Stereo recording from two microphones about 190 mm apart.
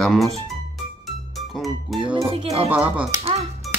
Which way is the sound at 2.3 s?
30° right (ahead or behind).